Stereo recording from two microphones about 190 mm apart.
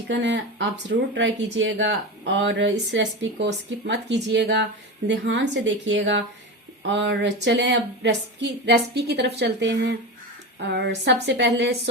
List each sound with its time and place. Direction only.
0.1 s speech: 65° right (ahead or behind)